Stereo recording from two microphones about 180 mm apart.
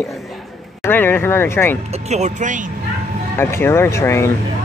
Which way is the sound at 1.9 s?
35° right (ahead or behind).